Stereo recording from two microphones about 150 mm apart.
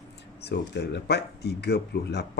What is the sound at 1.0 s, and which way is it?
Speech, 90° left.